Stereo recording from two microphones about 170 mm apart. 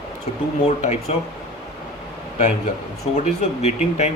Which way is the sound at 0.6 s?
40° left (ahead or behind).